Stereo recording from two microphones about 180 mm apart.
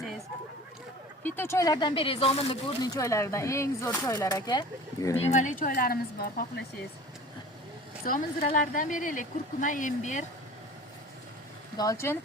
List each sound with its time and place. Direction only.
1.2 s speech: 15° left (ahead or behind)
5.1 s speech: 40° left (ahead or behind)
8.0 s speech: 50° left (ahead or behind)
11.8 s speech: 15° left (ahead or behind)